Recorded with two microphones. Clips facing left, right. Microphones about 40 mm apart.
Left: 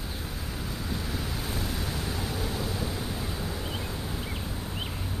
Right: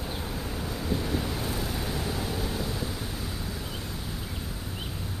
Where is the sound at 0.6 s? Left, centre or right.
Centre.